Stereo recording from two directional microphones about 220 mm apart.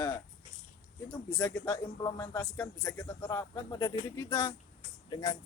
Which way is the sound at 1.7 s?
15° left (ahead or behind).